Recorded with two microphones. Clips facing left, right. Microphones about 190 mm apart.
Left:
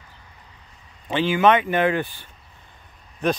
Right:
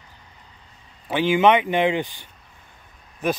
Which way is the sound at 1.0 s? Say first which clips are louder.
Right 1 dB; 10° right (ahead or behind).